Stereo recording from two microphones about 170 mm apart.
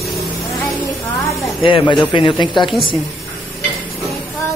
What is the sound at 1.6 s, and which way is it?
Speech, 30° left (ahead or behind).